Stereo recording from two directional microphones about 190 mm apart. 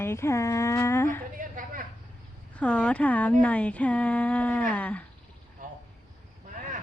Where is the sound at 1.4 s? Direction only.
45° right (ahead or behind).